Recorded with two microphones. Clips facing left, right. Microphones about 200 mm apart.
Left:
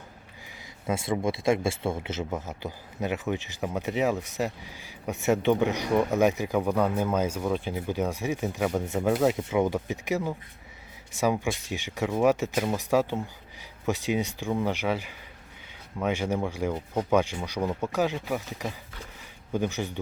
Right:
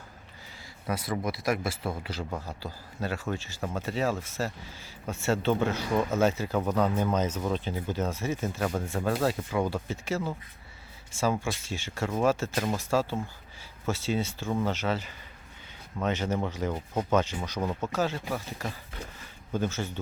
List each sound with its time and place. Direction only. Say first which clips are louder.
0.9 s a man's voice: left 4 dB; 25° left (ahead or behind)